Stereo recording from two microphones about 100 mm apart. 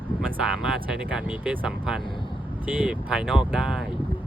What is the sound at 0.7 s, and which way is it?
Speech, 10° right (ahead or behind).